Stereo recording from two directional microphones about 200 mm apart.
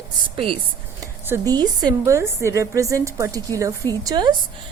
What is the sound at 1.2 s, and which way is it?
A woman's voice, 15° right (ahead or behind).